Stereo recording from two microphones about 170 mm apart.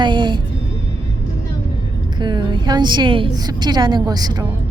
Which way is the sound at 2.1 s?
25° right (ahead or behind).